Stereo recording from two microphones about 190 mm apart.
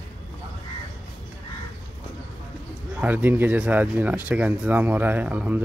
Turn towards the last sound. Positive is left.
turn(degrees=-10)  # may be behind; listen again after turning